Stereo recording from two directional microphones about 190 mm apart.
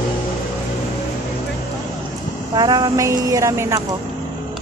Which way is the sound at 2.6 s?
20° right (ahead or behind).